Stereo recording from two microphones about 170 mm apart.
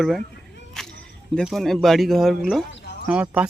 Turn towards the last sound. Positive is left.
turn(degrees=-10)  # may be behind; listen again after turning